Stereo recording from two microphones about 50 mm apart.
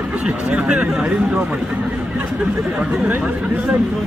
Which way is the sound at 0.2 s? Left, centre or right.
Right.